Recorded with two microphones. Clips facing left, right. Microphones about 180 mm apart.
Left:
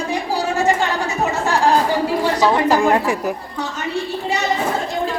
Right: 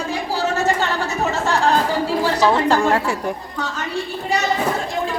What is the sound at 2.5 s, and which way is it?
Speech, 10° left (ahead or behind).